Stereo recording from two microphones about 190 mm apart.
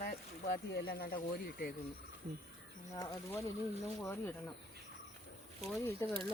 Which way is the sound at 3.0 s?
15° left (ahead or behind).